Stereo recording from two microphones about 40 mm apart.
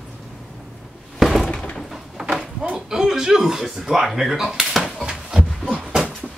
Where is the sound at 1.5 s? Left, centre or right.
Left.